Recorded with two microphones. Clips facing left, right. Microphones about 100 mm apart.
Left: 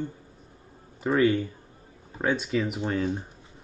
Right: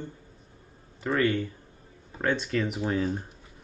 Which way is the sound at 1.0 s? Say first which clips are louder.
Left 3 dB; 20° left (ahead or behind).